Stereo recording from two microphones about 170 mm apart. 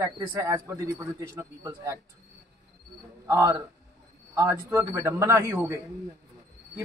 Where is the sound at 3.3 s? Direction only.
15° right (ahead or behind).